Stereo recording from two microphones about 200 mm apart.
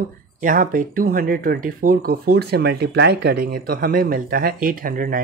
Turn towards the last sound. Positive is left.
turn(degrees=-45)  # may be behind; listen again after turning